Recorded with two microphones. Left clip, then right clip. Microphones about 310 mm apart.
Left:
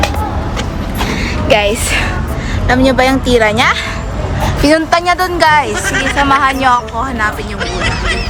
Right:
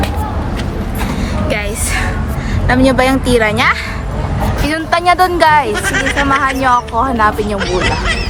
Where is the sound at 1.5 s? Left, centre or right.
Centre.